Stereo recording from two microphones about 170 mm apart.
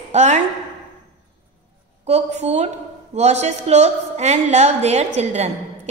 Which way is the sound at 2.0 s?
40° right (ahead or behind).